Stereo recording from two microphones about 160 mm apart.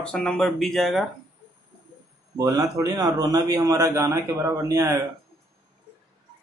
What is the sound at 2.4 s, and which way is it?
A man's voice, 20° right (ahead or behind).